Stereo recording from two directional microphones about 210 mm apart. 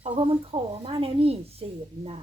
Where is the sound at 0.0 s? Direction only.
25° right (ahead or behind).